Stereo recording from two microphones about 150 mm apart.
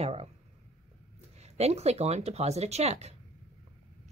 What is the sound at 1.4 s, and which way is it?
Speech, 45° right (ahead or behind).